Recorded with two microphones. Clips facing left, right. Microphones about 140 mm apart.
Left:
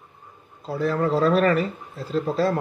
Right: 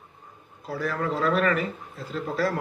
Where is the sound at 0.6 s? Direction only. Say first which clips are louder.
Left 5 dB; 25° left (ahead or behind).